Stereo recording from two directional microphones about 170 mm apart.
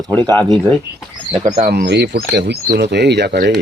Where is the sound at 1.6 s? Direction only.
65° right (ahead or behind).